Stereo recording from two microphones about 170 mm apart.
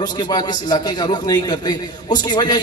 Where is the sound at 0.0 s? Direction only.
25° left (ahead or behind).